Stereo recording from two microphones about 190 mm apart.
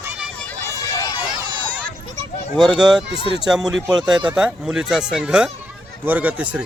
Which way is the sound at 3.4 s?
5° right (ahead or behind).